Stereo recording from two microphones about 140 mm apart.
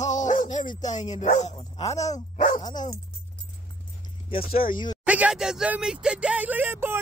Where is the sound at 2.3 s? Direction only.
70° left (ahead or behind).